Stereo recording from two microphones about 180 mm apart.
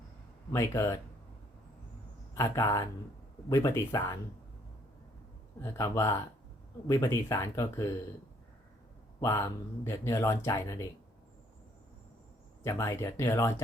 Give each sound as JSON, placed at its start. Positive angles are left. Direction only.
{"t": 0.5, "sound": "speech", "side_deg": 15}
{"t": 2.3, "sound": "speech", "side_deg": 15}
{"t": 5.6, "sound": "speech", "side_deg": 15}
{"t": 9.2, "sound": "speech", "side_deg": 15}
{"t": 12.6, "sound": "speech", "side_deg": 15}